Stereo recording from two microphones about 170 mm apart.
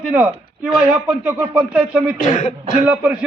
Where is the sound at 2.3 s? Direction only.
45° left (ahead or behind).